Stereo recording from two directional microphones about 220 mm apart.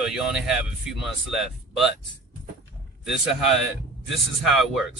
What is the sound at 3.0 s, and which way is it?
Speech, centre (ahead or behind).